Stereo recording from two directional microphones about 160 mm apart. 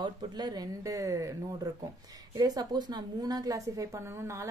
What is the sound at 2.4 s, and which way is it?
A woman's voice, 25° right (ahead or behind).